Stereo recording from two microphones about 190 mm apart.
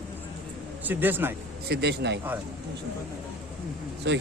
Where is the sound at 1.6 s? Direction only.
60° right (ahead or behind).